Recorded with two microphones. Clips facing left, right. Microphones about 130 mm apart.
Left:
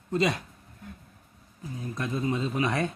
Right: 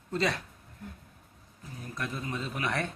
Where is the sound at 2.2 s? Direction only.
20° left (ahead or behind).